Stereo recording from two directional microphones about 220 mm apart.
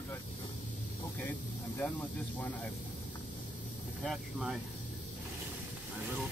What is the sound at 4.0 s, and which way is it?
Speech, centre (ahead or behind).